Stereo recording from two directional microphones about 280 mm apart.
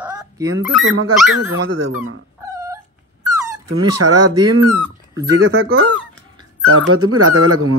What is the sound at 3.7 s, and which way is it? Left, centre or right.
Speech, right.